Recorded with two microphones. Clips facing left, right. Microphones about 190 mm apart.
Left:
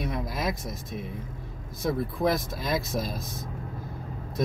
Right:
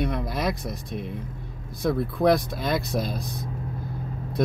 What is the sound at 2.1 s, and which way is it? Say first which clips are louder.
Speech: right 7 dB; 65° right (ahead or behind).